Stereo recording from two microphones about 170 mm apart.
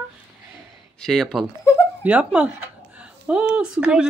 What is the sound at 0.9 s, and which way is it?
Speech, centre (ahead or behind).